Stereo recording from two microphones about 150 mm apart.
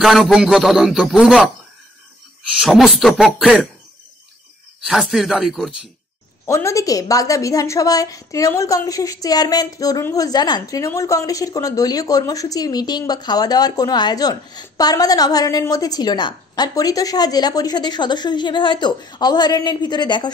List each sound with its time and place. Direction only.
0.0 s speech: centre (ahead or behind)
2.5 s speech: 5° right (ahead or behind)
4.8 s speech: centre (ahead or behind)
6.4 s a woman's voice: 20° left (ahead or behind)